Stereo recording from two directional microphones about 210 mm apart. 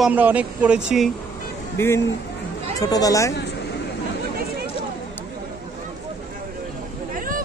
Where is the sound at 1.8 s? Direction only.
10° left (ahead or behind).